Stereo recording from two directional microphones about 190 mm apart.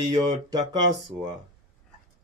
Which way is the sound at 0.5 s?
20° right (ahead or behind).